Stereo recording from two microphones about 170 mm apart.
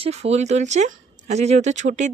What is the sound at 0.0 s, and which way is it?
Speech, 40° right (ahead or behind).